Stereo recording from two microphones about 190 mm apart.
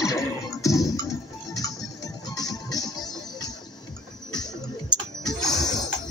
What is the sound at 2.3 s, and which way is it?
Music, 20° left (ahead or behind).